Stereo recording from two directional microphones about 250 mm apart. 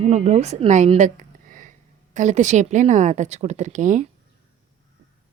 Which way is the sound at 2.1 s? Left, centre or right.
Right.